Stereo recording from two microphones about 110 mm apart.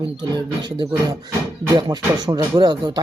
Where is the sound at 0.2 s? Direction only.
40° right (ahead or behind).